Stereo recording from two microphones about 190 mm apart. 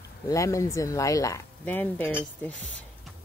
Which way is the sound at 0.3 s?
15° left (ahead or behind).